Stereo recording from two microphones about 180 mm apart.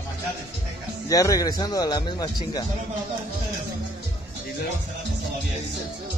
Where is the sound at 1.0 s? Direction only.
20° left (ahead or behind).